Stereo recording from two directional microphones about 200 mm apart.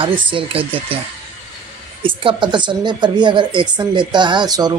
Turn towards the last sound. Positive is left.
turn(degrees=-20)  # may be behind; listen again after turning